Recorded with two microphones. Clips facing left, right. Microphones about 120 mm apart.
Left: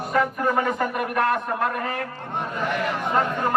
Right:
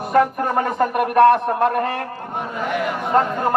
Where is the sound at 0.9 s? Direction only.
65° right (ahead or behind).